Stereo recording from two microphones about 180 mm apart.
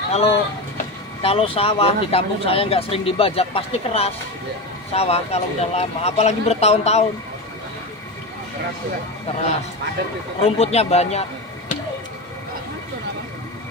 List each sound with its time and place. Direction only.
0.1 s speech: 35° left (ahead or behind)
10.4 s speech: 35° left (ahead or behind)